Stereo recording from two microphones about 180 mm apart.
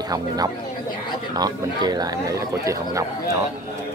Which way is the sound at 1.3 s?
20° right (ahead or behind).